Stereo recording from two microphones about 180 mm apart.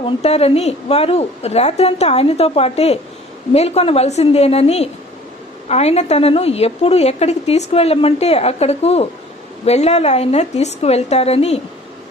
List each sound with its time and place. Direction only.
0.0 s a woman's voice: 35° left (ahead or behind)